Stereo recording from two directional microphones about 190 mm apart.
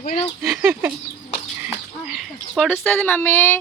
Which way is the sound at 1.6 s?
5° right (ahead or behind).